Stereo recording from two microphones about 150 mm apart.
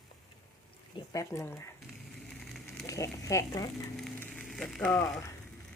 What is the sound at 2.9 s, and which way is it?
Speech, 20° left (ahead or behind).